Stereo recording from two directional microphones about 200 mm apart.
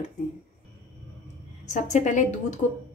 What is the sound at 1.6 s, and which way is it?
Speech, 35° left (ahead or behind).